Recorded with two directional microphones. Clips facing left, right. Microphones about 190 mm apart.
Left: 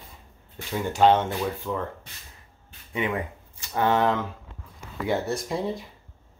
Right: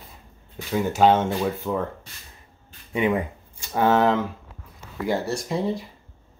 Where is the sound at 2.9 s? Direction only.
25° right (ahead or behind).